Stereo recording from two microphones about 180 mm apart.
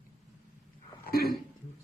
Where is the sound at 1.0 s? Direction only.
55° left (ahead or behind).